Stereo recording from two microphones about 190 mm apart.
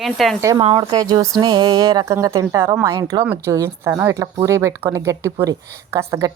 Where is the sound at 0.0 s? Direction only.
Centre (ahead or behind).